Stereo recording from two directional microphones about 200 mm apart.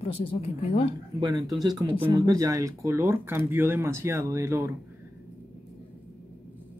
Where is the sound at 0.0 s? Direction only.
30° left (ahead or behind).